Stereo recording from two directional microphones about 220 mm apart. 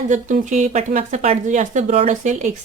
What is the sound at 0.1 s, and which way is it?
Speech, 35° right (ahead or behind).